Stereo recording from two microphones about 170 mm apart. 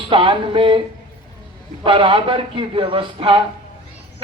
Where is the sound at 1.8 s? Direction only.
30° right (ahead or behind).